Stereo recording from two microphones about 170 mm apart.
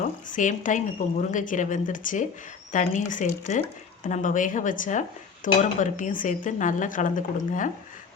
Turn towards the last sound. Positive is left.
turn(degrees=50)  # may be behind; listen again after turning